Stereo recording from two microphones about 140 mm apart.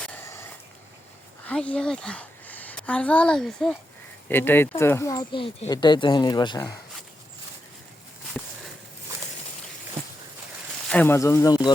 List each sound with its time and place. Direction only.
1.5 s a woman's voice: 10° left (ahead or behind)
4.3 s speech: 15° left (ahead or behind); by 6.7 s 35° left (ahead or behind)
10.8 s speech: 10° left (ahead or behind); by 11.7 s 25° left (ahead or behind)